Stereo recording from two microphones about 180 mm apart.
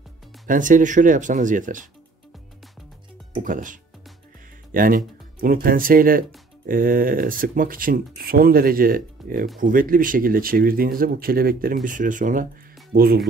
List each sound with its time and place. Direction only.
0.5 s speech: 45° right (ahead or behind)
3.4 s speech: 45° right (ahead or behind)
12.9 s speech: 55° right (ahead or behind)